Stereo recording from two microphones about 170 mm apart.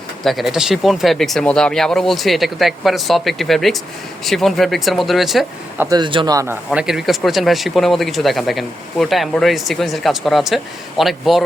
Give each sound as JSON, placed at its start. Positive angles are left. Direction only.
{"t": 0.3, "sound": "speech", "side_deg": 0}
{"t": 6.0, "sound": "speech", "side_deg": -30}
{"t": 6.3, "sound": "speech", "side_deg": -15}
{"t": 6.7, "sound": "speech", "side_deg": 0}